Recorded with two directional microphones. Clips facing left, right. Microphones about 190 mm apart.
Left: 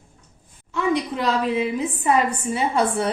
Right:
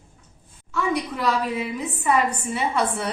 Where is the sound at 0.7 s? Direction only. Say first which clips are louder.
Left 3 dB; 25° left (ahead or behind).